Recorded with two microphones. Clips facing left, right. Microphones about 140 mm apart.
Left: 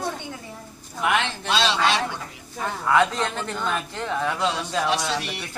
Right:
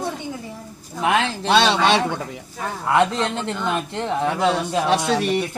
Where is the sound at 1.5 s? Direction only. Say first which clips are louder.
Right 6 dB; 60° right (ahead or behind).